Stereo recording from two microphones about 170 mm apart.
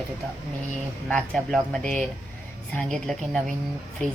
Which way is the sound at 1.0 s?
5° left (ahead or behind).